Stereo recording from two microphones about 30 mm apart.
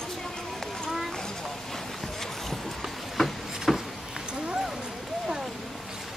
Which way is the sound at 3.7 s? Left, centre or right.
Centre.